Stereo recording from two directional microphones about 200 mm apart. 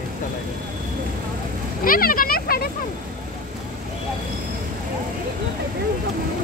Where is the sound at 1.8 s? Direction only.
45° left (ahead or behind).